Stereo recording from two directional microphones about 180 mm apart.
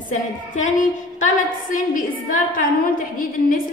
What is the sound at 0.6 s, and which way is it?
A woman's voice, 45° left (ahead or behind).